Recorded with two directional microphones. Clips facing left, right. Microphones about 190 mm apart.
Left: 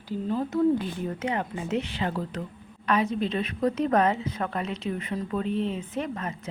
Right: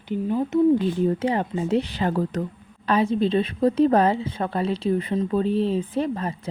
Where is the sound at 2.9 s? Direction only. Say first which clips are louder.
Right 5 dB; 30° right (ahead or behind).